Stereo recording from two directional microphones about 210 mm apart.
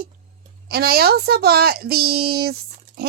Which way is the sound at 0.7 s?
50° right (ahead or behind).